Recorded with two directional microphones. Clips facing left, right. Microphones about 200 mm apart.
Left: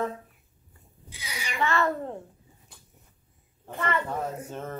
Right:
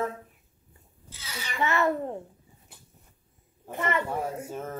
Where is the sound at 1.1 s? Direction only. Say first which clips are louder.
Left 1 dB; 15° left (ahead or behind).